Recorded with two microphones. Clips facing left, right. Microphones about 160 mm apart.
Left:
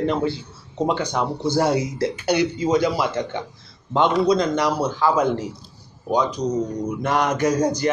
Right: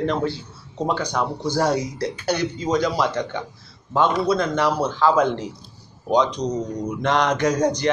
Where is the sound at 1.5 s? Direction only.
10° left (ahead or behind).